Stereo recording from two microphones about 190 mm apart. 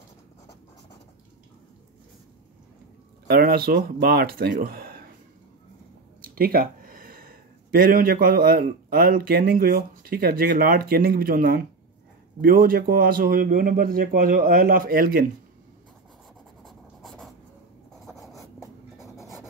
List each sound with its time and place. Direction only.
3.3 s speech: 55° right (ahead or behind)
6.2 s a sound: 50° right (ahead or behind)
7.9 s speech: 50° right (ahead or behind)
16.6 s writing: centre (ahead or behind)